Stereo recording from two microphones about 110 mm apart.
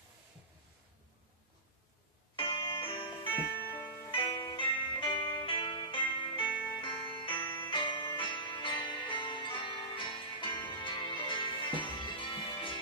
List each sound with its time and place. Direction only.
2.3 s music: 55° left (ahead or behind)